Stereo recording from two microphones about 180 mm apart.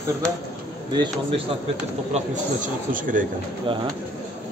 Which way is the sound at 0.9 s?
25° right (ahead or behind).